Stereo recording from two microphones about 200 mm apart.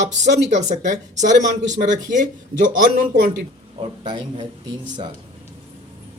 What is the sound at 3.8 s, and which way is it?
Speech, 20° right (ahead or behind).